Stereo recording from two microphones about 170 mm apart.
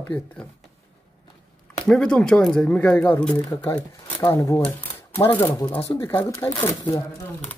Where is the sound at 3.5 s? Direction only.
20° left (ahead or behind).